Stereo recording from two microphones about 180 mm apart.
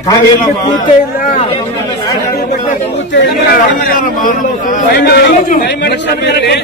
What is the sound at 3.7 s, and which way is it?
A man's voice, 50° left (ahead or behind).